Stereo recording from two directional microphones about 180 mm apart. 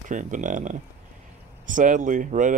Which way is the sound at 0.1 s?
45° right (ahead or behind).